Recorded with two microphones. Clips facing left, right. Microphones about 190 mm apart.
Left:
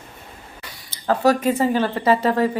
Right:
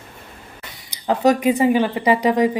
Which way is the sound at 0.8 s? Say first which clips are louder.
Right 1 dB; 15° right (ahead or behind).